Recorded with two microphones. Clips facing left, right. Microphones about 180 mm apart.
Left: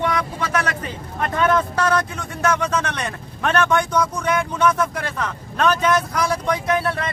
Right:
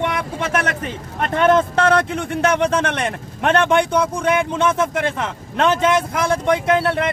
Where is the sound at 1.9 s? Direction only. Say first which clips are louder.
Right 4 dB; 55° right (ahead or behind).